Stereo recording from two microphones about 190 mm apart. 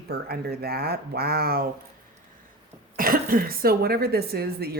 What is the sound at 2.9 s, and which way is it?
Speech, 50° right (ahead or behind).